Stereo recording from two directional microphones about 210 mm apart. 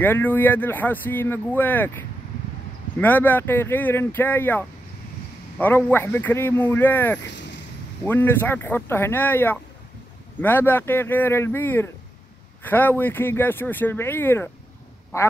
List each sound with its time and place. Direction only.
0.0 s speech: 10° left (ahead or behind)
7.2 s a sound: 55° left (ahead or behind)
8.0 s speech: 10° left (ahead or behind)